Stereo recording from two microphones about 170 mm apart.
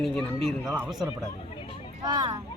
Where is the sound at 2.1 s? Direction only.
25° right (ahead or behind).